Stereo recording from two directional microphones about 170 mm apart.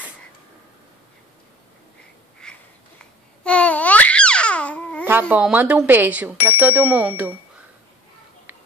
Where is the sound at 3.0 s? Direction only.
5° left (ahead or behind).